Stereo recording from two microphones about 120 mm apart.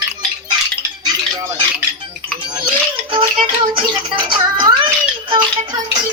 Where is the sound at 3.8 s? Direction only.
40° right (ahead or behind).